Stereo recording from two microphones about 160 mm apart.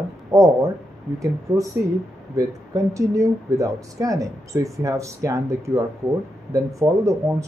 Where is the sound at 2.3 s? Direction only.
20° right (ahead or behind).